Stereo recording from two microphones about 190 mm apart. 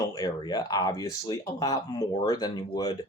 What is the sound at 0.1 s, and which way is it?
Speech, 20° left (ahead or behind).